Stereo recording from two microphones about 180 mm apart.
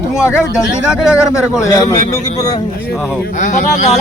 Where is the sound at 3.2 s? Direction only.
45° left (ahead or behind).